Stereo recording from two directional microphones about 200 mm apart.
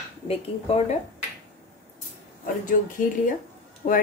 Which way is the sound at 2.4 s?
40° left (ahead or behind).